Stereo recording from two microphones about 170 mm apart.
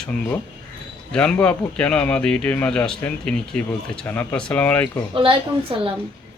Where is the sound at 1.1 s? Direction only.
5° left (ahead or behind).